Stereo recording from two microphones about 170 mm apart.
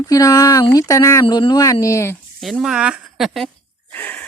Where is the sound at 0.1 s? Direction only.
20° left (ahead or behind).